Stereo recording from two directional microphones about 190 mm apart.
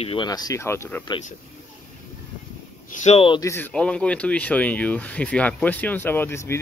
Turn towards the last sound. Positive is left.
turn(degrees=15)  # may be behind; listen again after turning